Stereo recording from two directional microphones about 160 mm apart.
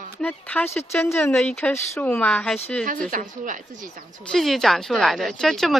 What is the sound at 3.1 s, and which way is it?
Speech, 55° right (ahead or behind).